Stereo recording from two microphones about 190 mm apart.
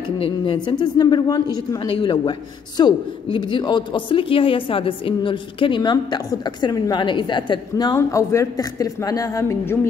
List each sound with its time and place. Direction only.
0.7 s a woman's voice: 20° left (ahead or behind)